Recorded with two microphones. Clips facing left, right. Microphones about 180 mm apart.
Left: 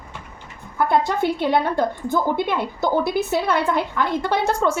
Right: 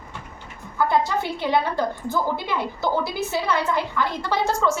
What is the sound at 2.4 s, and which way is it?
A woman's voice, 55° left (ahead or behind).